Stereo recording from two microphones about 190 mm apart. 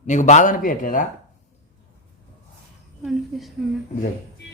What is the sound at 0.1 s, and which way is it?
Speech, 40° left (ahead or behind).